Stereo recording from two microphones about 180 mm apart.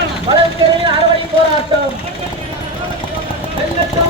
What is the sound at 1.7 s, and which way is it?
Speech, 25° right (ahead or behind).